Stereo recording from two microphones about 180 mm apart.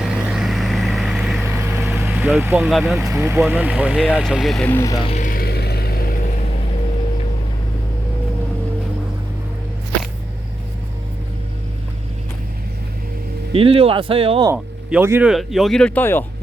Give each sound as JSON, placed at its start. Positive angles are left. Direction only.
{"t": 0.0, "sound": "vehicle", "side_deg": -5}
{"t": 1.5, "sound": "vehicle", "side_deg": -15}
{"t": 2.6, "sound": "speech", "side_deg": 0}
{"t": 3.1, "sound": "speech", "side_deg": -15}
{"t": 5.0, "sound": "vehicle", "side_deg": 45}
{"t": 13.5, "sound": "speech", "side_deg": -35}
{"t": 14.4, "sound": "speech", "side_deg": -10}